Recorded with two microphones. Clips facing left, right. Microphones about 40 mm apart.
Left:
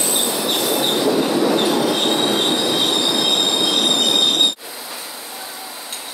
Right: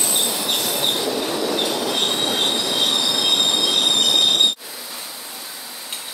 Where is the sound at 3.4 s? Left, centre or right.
Centre.